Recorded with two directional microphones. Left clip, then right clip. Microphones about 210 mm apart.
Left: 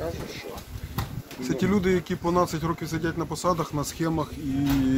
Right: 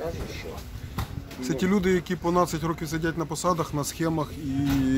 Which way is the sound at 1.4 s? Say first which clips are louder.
Even; 35° right (ahead or behind).